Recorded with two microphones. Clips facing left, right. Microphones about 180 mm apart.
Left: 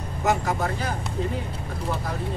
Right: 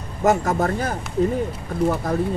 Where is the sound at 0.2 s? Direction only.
50° right (ahead or behind).